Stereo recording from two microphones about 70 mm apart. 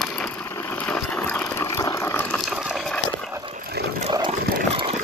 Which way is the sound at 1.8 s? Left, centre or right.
Left.